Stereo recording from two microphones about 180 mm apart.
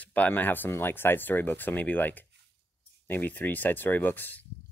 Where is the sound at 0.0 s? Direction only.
10° left (ahead or behind).